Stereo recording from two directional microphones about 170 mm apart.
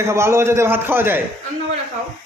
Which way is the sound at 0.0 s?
15° right (ahead or behind).